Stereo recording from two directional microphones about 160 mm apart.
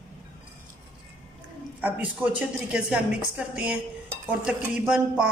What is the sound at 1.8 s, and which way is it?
Speech, 10° right (ahead or behind).